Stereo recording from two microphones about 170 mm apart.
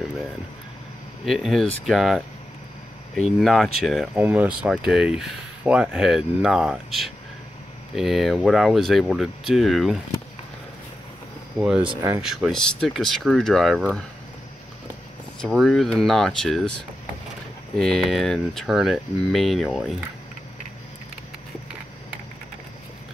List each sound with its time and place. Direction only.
1.2 s speech: centre (ahead or behind)
11.5 s speech: 5° right (ahead or behind)
11.9 s speech: 20° right (ahead or behind)
12.2 s speech: centre (ahead or behind)
15.4 s speech: centre (ahead or behind)